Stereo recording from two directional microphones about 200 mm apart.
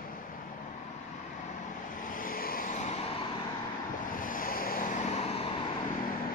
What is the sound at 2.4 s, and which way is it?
Vehicle, 45° left (ahead or behind).